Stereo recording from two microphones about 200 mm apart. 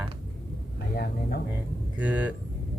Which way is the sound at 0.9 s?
50° left (ahead or behind).